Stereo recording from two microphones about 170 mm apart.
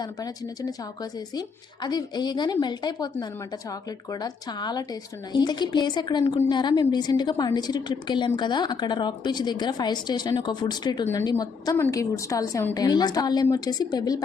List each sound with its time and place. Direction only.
0.0 s a woman's voice: 20° left (ahead or behind)